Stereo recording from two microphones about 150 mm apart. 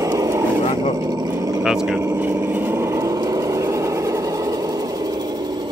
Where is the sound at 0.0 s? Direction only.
25° right (ahead or behind).